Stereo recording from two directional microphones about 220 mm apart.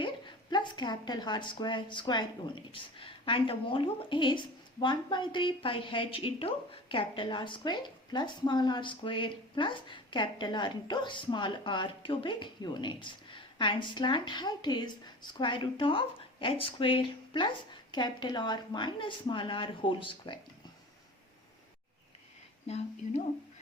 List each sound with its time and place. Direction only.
0.0 s a woman's voice: 20° left (ahead or behind)
22.6 s a woman's voice: 30° left (ahead or behind)